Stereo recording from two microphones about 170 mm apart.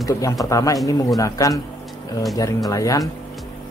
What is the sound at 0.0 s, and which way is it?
A man's voice, 20° left (ahead or behind).